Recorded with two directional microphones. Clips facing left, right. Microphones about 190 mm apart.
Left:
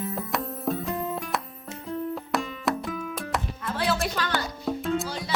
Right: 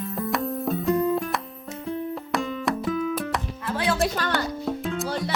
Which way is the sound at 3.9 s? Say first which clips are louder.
Right 4 dB; 45° right (ahead or behind).